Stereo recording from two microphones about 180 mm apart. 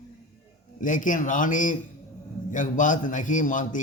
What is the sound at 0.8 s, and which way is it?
A man's voice, 45° left (ahead or behind).